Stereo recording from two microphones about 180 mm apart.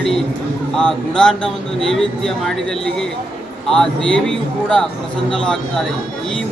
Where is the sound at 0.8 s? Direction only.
5° left (ahead or behind).